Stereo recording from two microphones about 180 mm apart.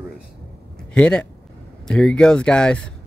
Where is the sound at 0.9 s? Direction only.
5° left (ahead or behind).